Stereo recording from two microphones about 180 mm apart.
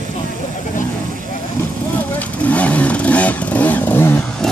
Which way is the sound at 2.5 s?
10° left (ahead or behind).